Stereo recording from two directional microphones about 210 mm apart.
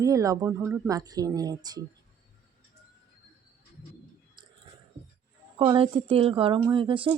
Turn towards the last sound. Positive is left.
turn(degrees=-25)  # may be behind; listen again after turning